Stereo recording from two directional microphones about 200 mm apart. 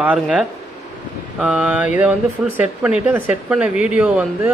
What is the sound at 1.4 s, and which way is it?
Mantra, 5° right (ahead or behind).